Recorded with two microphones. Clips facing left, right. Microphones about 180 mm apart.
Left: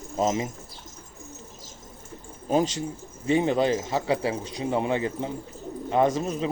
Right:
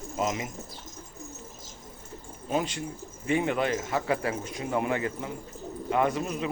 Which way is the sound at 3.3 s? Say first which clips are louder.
Left 4 dB; 30° left (ahead or behind).